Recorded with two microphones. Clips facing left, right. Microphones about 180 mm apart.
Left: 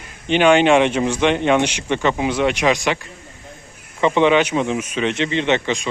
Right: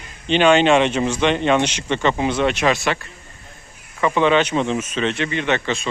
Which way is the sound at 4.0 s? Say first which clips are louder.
Left 2 dB; 20° left (ahead or behind).